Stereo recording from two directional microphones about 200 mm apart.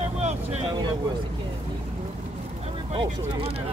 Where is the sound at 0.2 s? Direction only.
35° right (ahead or behind).